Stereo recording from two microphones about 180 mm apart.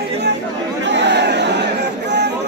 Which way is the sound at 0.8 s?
75° right (ahead or behind).